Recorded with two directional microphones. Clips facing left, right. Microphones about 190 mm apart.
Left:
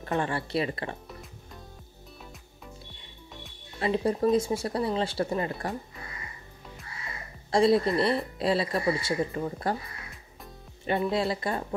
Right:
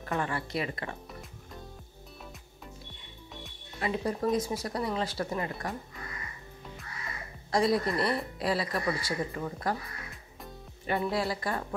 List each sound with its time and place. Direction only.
0.0 s speech: 30° left (ahead or behind)
3.8 s speech: 30° left (ahead or behind)
7.5 s speech: 25° left (ahead or behind)
10.9 s speech: 25° left (ahead or behind)